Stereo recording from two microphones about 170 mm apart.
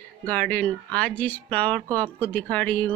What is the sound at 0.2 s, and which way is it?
Speech, 10° left (ahead or behind).